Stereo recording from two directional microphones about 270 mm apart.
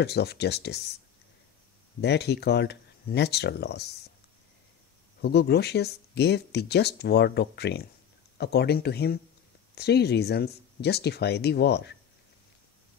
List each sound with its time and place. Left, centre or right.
0.0 s speech: left
2.0 s speech: left
5.2 s speech: left